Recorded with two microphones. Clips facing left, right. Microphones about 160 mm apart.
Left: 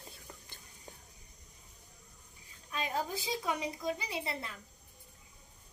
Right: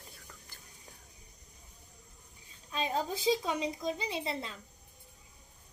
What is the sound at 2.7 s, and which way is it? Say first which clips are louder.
A woman's voice: right 3 dB; 25° right (ahead or behind).